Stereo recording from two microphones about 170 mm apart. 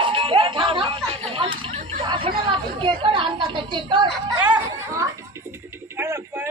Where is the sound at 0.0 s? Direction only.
30° right (ahead or behind).